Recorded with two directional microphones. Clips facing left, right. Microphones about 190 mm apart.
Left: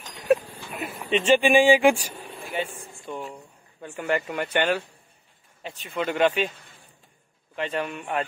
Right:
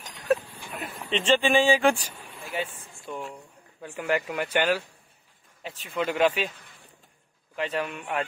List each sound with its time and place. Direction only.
0.7 s speech: 10° left (ahead or behind)
2.5 s speech: 5° right (ahead or behind)
7.5 s speech: 5° right (ahead or behind)